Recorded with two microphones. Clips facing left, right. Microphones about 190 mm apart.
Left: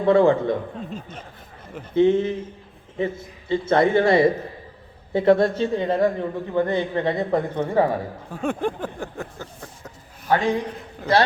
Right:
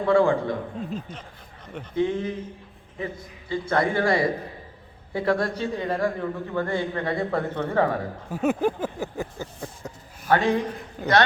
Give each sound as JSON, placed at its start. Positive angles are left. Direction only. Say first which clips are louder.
{"t": 0.0, "sound": "a man's voice", "louder": "left 3 dB", "side_deg": 20}
{"t": 2.0, "sound": "a man's voice", "louder": "left 7 dB", "side_deg": 25}
{"t": 8.3, "sound": "a sound", "louder": "right 2 dB", "side_deg": -5}
{"t": 10.3, "sound": "a man's voice", "louder": "even", "side_deg": 15}
{"t": 11.0, "sound": "a man's voice", "louder": "left 2 dB", "side_deg": 0}